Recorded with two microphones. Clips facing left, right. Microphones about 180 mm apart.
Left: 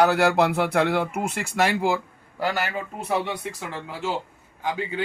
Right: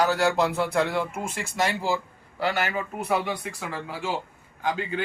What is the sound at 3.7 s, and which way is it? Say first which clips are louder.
Speech: left 1 dB; 15° left (ahead or behind).